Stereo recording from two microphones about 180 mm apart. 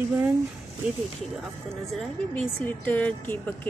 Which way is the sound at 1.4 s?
Centre (ahead or behind).